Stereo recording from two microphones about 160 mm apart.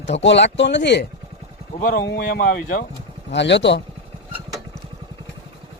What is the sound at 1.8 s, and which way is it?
Speech, 65° left (ahead or behind).